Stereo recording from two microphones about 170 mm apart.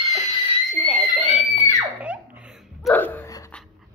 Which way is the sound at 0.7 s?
Centre (ahead or behind).